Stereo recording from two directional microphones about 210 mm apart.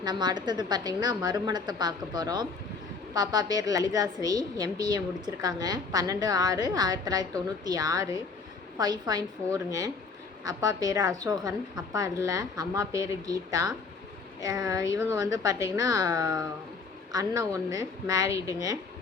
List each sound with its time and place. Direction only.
0.0 s a woman's voice: 20° right (ahead or behind)